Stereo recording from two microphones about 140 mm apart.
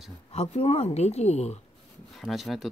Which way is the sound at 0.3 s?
50° left (ahead or behind).